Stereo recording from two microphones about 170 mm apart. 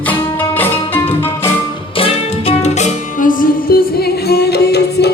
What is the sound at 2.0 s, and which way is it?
Music, 35° left (ahead or behind).